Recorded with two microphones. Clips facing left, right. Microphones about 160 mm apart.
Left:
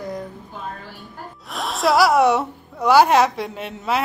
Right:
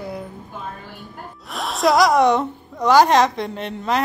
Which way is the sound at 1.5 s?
Centre (ahead or behind).